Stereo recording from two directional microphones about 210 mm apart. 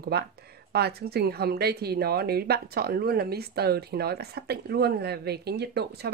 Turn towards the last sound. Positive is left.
turn(degrees=-50)  # may be behind; listen again after turning